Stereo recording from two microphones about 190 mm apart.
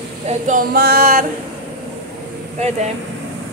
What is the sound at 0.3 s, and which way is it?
Speech, 45° right (ahead or behind).